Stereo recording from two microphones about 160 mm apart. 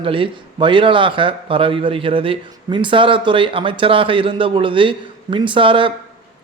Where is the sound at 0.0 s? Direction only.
35° right (ahead or behind).